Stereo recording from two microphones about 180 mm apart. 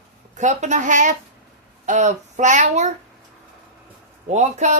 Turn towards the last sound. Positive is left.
turn(degrees=-40)  # may be behind; listen again after turning